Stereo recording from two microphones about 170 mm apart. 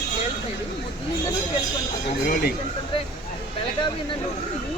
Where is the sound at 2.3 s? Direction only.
60° left (ahead or behind).